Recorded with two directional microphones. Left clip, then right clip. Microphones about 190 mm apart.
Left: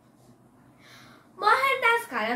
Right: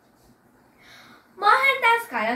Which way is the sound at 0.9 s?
Centre (ahead or behind).